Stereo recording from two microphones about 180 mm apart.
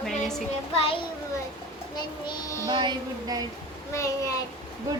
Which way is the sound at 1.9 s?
25° left (ahead or behind).